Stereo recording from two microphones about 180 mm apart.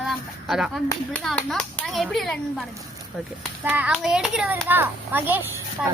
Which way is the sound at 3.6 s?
5° right (ahead or behind).